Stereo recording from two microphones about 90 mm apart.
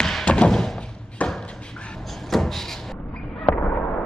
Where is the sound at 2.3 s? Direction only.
5° left (ahead or behind).